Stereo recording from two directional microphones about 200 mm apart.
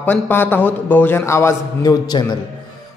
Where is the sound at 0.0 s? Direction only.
10° left (ahead or behind).